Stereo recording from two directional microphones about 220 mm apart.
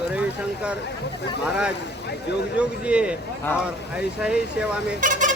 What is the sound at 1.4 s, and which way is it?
Speech, 5° right (ahead or behind).